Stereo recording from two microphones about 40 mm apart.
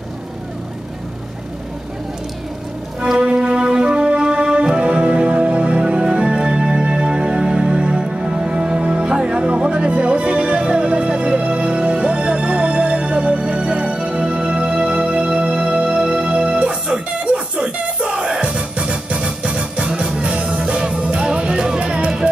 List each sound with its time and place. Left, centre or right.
3.3 s music: right